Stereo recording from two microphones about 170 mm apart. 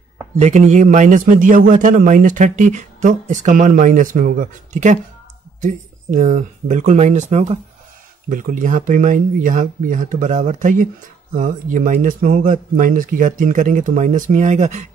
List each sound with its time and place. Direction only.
0.4 s a man's voice: 45° right (ahead or behind)